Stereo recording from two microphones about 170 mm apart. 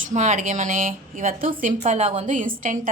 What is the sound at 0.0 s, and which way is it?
A woman's voice, 45° right (ahead or behind).